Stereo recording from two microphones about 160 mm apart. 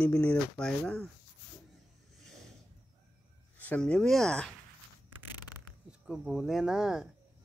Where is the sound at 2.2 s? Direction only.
Centre (ahead or behind).